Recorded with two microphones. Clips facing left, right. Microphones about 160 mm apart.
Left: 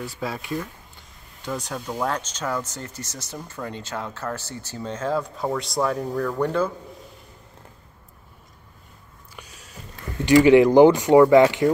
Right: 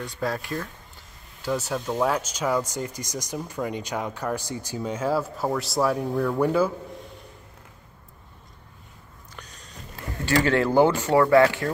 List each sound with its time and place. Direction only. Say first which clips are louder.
0.0 s speech: right 2 dB; 5° left (ahead or behind)
9.3 s sniff: left 1 dB; 10° left (ahead or behind)
10.2 s speech: left 8 dB; 15° left (ahead or behind)